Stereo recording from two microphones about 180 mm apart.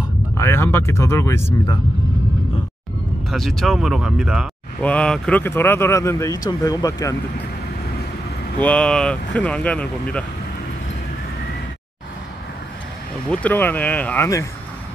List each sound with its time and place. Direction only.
0.4 s speech: 15° left (ahead or behind)
3.3 s speech: centre (ahead or behind); by 7.2 s 20° left (ahead or behind)
8.5 s speech: 5° left (ahead or behind)
13.3 s speech: 10° left (ahead or behind)